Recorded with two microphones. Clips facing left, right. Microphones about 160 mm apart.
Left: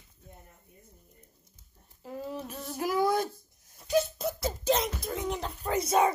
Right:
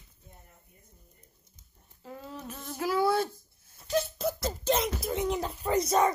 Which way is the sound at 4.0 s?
5° left (ahead or behind).